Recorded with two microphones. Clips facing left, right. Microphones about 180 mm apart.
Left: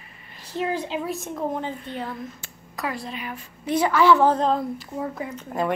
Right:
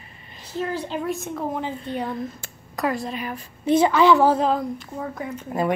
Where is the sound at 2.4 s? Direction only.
45° right (ahead or behind).